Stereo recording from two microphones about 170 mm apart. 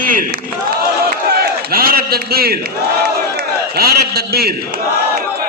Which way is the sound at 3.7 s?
65° right (ahead or behind).